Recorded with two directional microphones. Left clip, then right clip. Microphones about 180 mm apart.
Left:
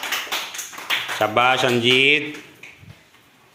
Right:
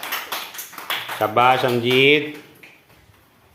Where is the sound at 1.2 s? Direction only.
Centre (ahead or behind).